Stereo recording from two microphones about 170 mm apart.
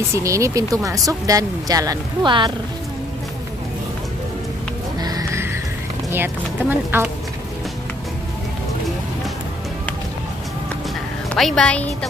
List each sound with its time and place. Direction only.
0.1 s speech: 20° right (ahead or behind)
5.0 s music: 20° right (ahead or behind)
6.1 s speech: 10° right (ahead or behind)
11.2 s a woman's voice: centre (ahead or behind)